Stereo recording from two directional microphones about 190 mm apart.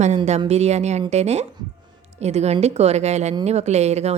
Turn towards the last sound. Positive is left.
turn(degrees=-35)  # may be behind; listen again after turning